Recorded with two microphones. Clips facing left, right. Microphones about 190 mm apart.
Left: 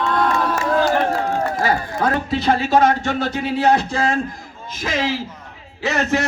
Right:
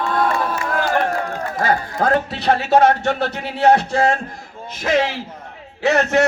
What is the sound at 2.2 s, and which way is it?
A man's voice, 65° right (ahead or behind).